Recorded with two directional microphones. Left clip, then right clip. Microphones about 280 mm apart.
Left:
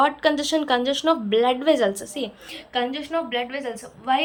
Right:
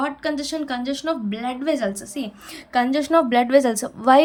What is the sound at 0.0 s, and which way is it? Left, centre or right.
A woman's voice, centre.